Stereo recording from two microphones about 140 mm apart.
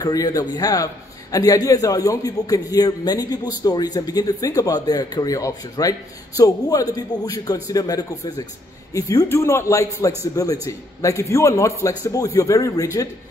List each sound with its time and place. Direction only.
0.0 s a man's voice: 25° left (ahead or behind)